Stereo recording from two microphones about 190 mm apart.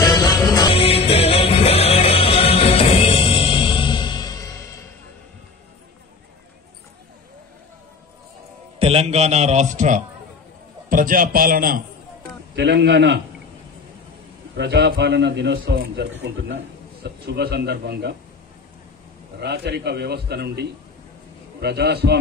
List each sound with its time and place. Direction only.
0.0 s music: 20° left (ahead or behind)
0.7 s music: 30° left (ahead or behind)
8.7 s a man's voice: 30° right (ahead or behind); by 11.8 s 50° right (ahead or behind)
12.5 s a man's voice: 65° right (ahead or behind)
14.6 s a man's voice: 60° right (ahead or behind)
19.4 s a man's voice: 60° right (ahead or behind)